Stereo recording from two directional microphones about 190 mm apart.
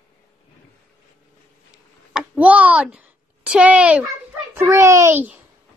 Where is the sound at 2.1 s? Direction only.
5° right (ahead or behind).